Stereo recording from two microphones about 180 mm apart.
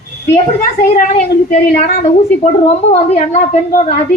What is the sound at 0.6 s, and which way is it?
A woman's voice, 50° left (ahead or behind).